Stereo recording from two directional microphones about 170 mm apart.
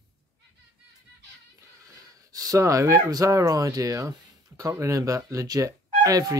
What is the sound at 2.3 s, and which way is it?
Speech, 20° right (ahead or behind).